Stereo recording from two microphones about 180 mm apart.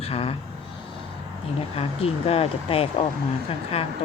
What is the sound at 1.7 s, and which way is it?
Speech, 30° left (ahead or behind).